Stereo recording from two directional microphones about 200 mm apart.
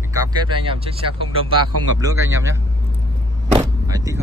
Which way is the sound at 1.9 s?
15° right (ahead or behind).